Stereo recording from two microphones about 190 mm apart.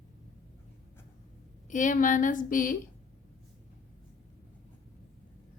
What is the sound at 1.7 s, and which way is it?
A woman's voice, 45° left (ahead or behind).